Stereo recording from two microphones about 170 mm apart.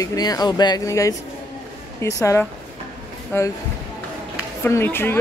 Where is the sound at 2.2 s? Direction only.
15° left (ahead or behind).